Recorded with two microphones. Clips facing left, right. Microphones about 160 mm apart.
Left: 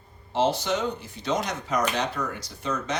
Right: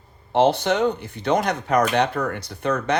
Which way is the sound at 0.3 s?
60° right (ahead or behind).